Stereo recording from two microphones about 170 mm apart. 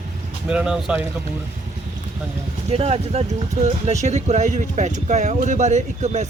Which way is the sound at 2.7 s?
40° right (ahead or behind).